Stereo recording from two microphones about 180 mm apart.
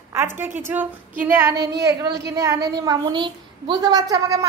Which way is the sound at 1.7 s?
65° right (ahead or behind).